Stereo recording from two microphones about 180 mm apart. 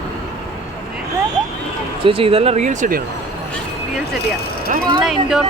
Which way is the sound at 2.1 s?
30° right (ahead or behind).